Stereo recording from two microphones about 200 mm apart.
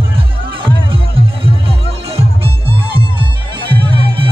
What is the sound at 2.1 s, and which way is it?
Music, 25° right (ahead or behind).